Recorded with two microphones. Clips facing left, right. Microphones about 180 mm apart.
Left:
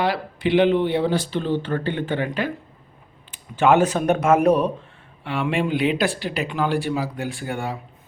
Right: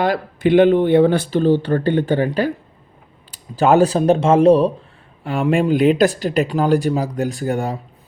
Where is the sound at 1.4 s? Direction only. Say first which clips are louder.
Right 8 dB; 40° right (ahead or behind).